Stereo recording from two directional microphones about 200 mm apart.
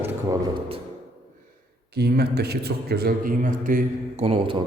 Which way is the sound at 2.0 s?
55° right (ahead or behind).